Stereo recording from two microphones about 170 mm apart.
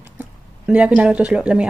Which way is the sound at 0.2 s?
10° right (ahead or behind).